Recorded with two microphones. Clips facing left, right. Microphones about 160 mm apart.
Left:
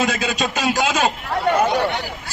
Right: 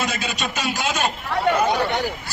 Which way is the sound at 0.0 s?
90° left.